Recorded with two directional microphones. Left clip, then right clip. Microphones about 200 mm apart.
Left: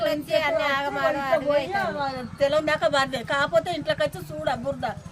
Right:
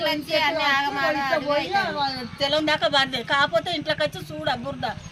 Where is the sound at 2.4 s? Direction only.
25° left (ahead or behind).